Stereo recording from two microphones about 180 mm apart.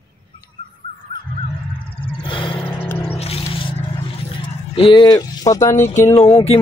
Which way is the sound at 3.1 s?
35° left (ahead or behind).